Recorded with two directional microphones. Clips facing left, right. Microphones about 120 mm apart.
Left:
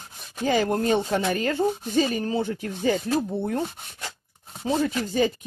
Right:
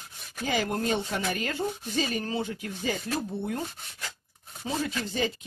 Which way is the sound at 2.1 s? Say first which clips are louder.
Left 5 dB; 30° left (ahead or behind).